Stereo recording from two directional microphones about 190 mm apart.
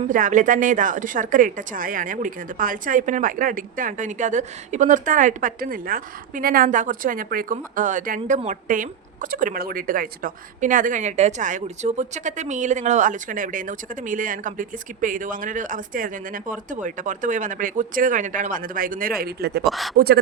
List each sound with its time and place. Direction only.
0.1 s speech: 45° right (ahead or behind)
19.6 s speech: centre (ahead or behind)